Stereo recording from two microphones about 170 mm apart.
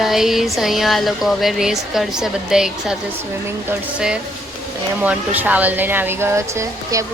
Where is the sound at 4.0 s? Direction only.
5° right (ahead or behind).